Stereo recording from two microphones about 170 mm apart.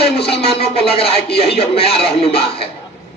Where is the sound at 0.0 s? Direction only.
35° left (ahead or behind).